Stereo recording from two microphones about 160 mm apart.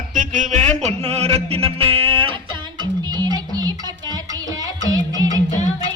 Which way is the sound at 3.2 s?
25° right (ahead or behind).